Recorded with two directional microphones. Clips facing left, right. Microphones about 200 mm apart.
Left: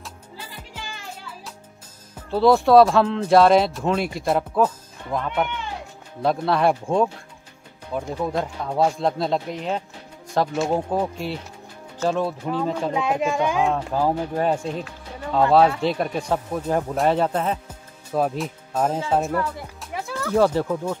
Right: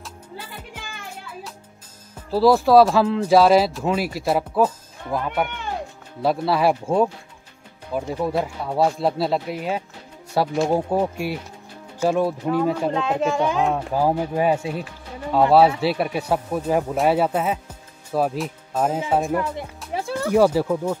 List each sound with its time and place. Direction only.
2.3 s speech: centre (ahead or behind)
12.9 s speech: 15° left (ahead or behind)
13.7 s speech: 10° right (ahead or behind)
19.9 s music: 30° right (ahead or behind)
20.2 s speech: 10° right (ahead or behind)